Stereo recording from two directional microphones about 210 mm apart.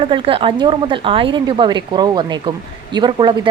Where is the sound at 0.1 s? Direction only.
25° right (ahead or behind).